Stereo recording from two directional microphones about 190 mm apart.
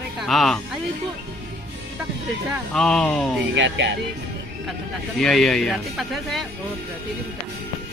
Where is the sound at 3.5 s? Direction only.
70° right (ahead or behind).